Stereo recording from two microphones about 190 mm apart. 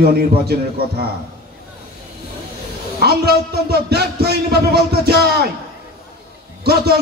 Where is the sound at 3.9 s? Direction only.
55° right (ahead or behind).